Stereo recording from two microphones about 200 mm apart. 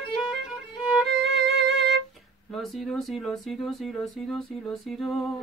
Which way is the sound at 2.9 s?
Centre (ahead or behind).